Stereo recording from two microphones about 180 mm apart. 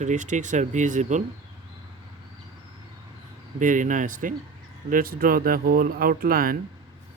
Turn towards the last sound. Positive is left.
turn(degrees=-55)  # may be behind; listen again after turning